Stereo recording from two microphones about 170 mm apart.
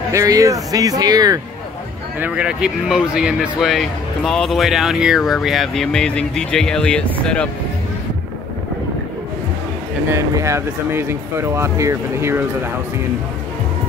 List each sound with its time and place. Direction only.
0.1 s speech: 20° right (ahead or behind)
2.1 s speech: 10° right (ahead or behind)
10.0 s speech: 15° right (ahead or behind)